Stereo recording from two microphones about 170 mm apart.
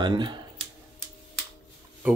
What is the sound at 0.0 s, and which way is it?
Speech, 25° right (ahead or behind).